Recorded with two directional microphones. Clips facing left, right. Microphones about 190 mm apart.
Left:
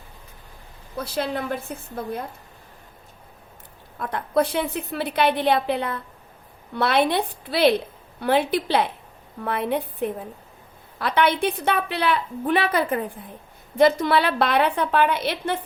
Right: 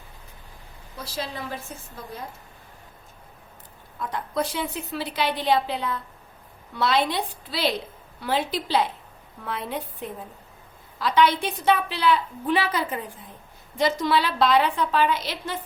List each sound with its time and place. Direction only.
0.9 s a woman's voice: 60° left (ahead or behind)
3.9 s a woman's voice: 60° left (ahead or behind)